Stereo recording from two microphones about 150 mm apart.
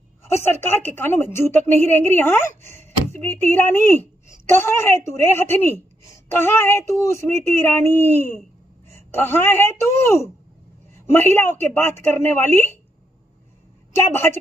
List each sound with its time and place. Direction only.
0.3 s a woman's voice: 15° left (ahead or behind)
13.9 s a woman's voice: 15° left (ahead or behind)